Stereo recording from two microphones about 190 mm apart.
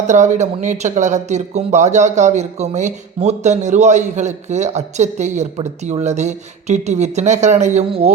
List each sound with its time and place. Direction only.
0.1 s speech: 40° right (ahead or behind)